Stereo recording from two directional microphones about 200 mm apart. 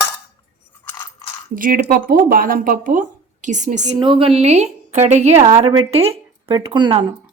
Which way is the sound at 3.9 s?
25° right (ahead or behind).